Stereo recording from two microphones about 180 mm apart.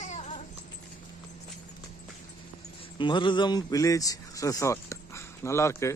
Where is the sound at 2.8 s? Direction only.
25° left (ahead or behind).